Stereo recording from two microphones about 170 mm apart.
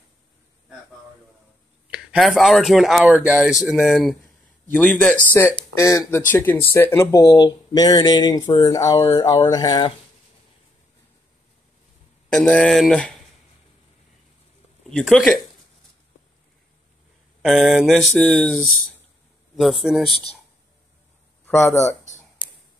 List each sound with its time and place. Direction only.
1.9 s speech: centre (ahead or behind); by 9.9 s 25° left (ahead or behind)
12.3 s speech: 5° left (ahead or behind)
14.9 s speech: 5° left (ahead or behind)
17.4 s speech: centre (ahead or behind)
21.5 s speech: 15° left (ahead or behind)